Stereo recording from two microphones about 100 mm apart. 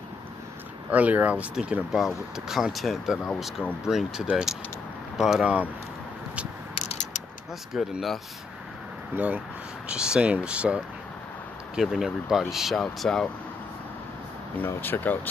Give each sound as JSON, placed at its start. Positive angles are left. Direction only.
{"t": 0.8, "sound": "speech", "side_deg": -15}
{"t": 7.7, "sound": "speech", "side_deg": -5}
{"t": 9.1, "sound": "speech", "side_deg": -20}
{"t": 14.6, "sound": "speech", "side_deg": 20}